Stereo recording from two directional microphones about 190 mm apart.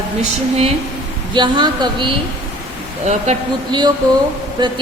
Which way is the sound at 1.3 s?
25° right (ahead or behind).